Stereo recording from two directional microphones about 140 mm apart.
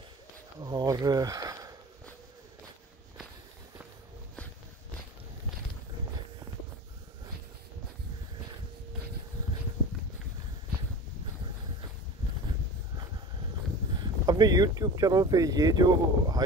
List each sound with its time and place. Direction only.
0.6 s speech: 30° right (ahead or behind)
14.0 s speech: 30° right (ahead or behind)